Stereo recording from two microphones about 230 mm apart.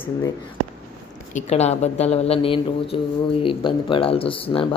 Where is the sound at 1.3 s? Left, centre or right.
Left.